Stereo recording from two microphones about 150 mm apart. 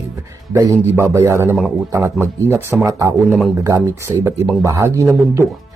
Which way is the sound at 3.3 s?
Centre (ahead or behind).